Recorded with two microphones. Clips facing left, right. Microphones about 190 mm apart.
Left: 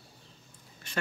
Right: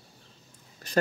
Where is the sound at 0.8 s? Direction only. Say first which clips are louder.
Right 4 dB; 40° right (ahead or behind).